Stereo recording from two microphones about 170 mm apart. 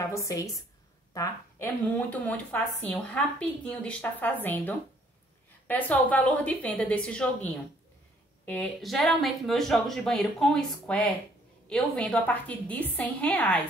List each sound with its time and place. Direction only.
0.0 s a woman's voice: 15° left (ahead or behind)
2.0 s a woman's voice: 10° left (ahead or behind)